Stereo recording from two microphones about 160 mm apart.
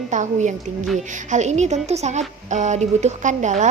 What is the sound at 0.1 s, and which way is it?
Speech, 50° right (ahead or behind).